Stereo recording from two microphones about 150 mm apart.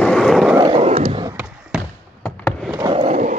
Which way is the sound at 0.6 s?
35° right (ahead or behind).